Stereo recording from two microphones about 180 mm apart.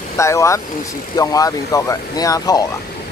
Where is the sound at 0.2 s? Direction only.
15° left (ahead or behind).